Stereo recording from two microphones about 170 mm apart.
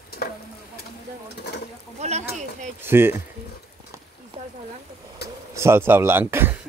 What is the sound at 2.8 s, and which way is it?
Speech, 15° right (ahead or behind).